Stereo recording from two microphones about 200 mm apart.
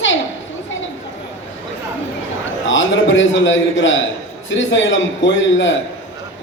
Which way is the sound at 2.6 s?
70° left (ahead or behind).